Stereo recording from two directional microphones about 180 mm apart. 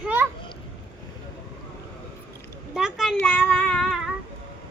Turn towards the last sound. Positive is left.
turn(degrees=0)  # may be behind; listen again after turning